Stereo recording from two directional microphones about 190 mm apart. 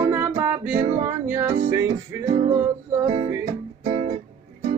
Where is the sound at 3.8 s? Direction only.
35° right (ahead or behind).